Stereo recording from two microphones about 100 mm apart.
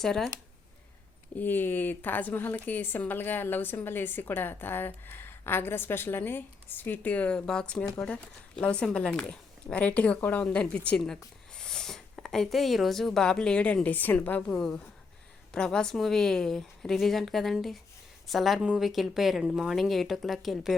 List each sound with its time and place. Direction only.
0.0 s speech: 5° left (ahead or behind)
1.4 s a woman's voice: 20° left (ahead or behind); by 20.7 s centre (ahead or behind)